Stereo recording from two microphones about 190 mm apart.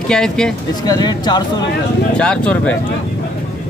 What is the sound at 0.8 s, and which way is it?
Speech, 20° left (ahead or behind).